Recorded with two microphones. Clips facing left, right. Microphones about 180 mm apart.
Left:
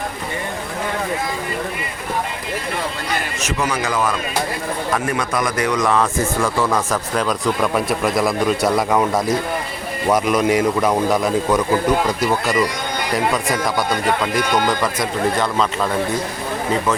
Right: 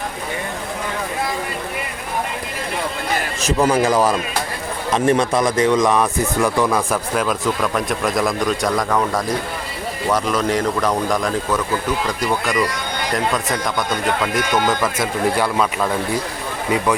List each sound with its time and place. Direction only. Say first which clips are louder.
3.4 s a man's voice: right 8 dB; 30° right (ahead or behind); by 15.9 s 10° right (ahead or behind)